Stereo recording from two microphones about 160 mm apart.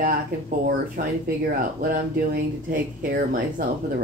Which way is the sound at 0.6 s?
60° right (ahead or behind).